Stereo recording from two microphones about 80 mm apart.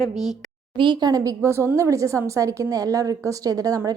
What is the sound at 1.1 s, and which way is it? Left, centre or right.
A woman's voice, right.